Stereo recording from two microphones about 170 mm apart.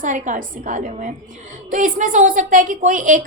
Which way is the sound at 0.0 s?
50° right (ahead or behind).